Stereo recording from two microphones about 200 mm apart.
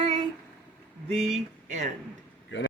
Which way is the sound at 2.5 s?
65° left (ahead or behind).